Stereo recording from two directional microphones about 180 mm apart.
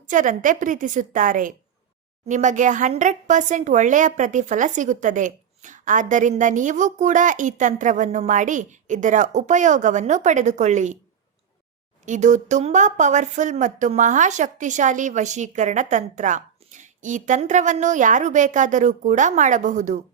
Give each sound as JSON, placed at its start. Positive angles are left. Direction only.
{"t": 0.1, "sound": "speech", "side_deg": -45}
{"t": 12.0, "sound": "speech", "side_deg": -40}